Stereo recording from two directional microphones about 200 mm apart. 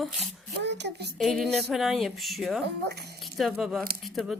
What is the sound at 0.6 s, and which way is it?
Speech, 60° right (ahead or behind).